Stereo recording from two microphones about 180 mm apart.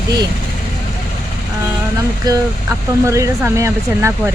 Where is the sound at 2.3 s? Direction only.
20° right (ahead or behind).